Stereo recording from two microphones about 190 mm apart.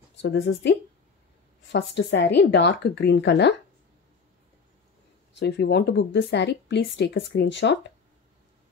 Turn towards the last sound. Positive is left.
turn(degrees=65)  # may be behind; listen again after turning